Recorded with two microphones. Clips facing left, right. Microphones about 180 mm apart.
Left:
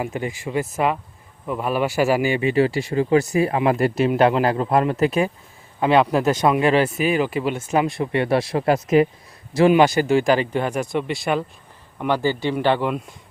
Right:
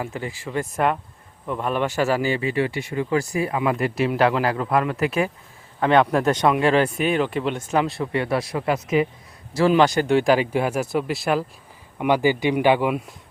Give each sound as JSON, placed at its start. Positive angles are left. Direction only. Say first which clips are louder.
{"t": 0.0, "sound": "speech", "louder": "left 3 dB", "side_deg": 20}
{"t": 5.8, "sound": "speech", "louder": "left 1 dB", "side_deg": 10}
{"t": 9.6, "sound": "speech", "louder": "left 2 dB", "side_deg": 15}
{"t": 11.9, "sound": "speech", "louder": "right 2 dB", "side_deg": -15}